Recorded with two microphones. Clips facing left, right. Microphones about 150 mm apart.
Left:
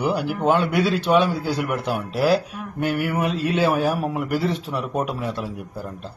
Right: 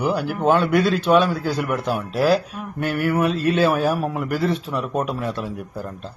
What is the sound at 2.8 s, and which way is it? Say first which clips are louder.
Speech: right 2 dB; 15° left (ahead or behind).